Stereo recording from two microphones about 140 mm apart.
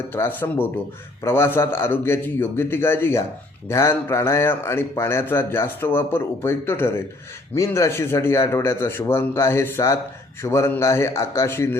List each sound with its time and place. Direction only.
0.1 s a man's voice: 15° left (ahead or behind)